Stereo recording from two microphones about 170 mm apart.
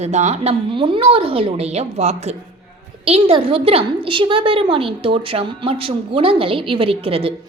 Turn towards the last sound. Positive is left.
turn(degrees=-35)  # may be behind; listen again after turning